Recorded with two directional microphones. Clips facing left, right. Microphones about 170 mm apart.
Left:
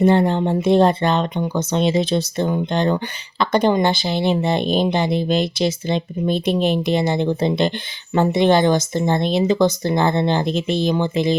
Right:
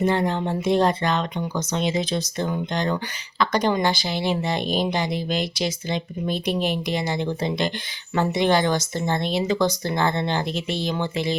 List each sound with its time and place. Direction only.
0.0 s speech: 30° left (ahead or behind)